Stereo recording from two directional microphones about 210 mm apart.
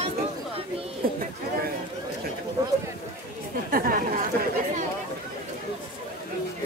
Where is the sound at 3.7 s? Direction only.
40° right (ahead or behind).